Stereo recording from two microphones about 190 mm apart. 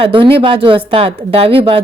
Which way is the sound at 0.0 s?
25° right (ahead or behind).